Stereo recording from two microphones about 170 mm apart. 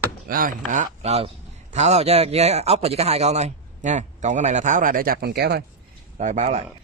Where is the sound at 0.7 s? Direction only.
45° right (ahead or behind); by 5.6 s 75° right (ahead or behind).